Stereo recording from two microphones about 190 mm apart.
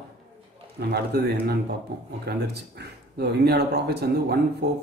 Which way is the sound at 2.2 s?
60° right (ahead or behind).